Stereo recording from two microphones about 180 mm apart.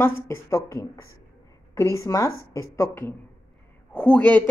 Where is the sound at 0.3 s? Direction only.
15° left (ahead or behind).